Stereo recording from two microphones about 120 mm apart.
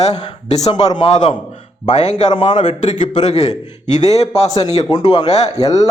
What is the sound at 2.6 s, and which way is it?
A man's voice, 75° left (ahead or behind).